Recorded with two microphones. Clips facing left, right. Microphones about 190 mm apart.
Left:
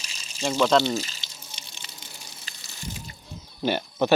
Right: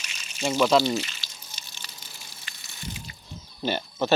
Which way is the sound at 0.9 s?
40° left (ahead or behind).